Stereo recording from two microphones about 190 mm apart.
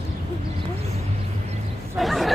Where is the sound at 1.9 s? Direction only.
Centre (ahead or behind).